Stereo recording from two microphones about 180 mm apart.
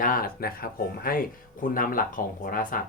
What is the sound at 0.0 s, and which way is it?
Speech, 50° left (ahead or behind).